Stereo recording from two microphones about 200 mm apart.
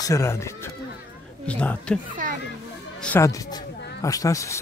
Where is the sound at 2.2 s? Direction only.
45° right (ahead or behind).